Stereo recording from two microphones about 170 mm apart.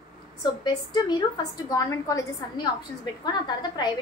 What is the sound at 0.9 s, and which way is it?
A woman's voice, 20° left (ahead or behind).